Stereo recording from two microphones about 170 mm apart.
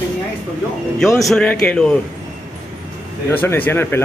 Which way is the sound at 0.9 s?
Centre (ahead or behind).